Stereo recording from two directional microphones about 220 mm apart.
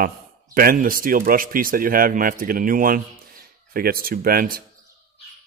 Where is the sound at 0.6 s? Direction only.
40° right (ahead or behind).